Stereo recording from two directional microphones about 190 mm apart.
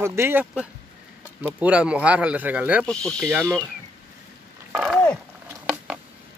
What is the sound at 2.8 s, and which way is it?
Speech, 5° left (ahead or behind).